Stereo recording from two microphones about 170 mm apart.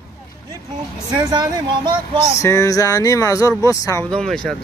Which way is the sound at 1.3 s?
25° right (ahead or behind).